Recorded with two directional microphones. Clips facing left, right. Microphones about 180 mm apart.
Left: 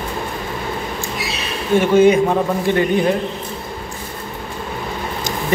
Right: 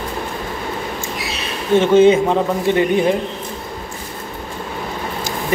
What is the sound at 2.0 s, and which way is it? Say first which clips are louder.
Speech: even; 20° right (ahead or behind).